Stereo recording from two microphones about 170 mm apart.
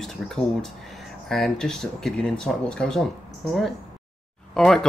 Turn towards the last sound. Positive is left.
turn(degrees=0)  # may be behind; listen again after turning